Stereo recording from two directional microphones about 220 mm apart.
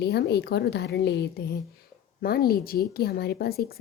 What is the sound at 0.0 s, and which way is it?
A woman's voice, 45° left (ahead or behind).